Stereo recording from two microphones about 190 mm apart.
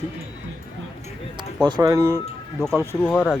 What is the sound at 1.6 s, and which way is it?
Speech, 20° right (ahead or behind).